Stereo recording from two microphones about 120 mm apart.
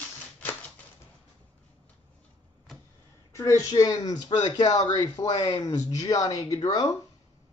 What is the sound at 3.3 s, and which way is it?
Speech, 25° left (ahead or behind).